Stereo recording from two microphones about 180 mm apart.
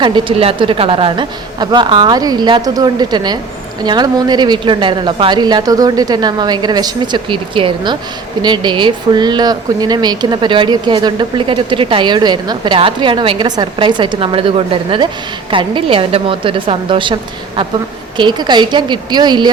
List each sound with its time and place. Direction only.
0.0 s speech: 30° right (ahead or behind)
18.2 s speech: 25° right (ahead or behind)